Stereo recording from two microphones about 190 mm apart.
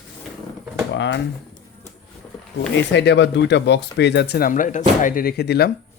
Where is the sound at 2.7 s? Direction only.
65° left (ahead or behind).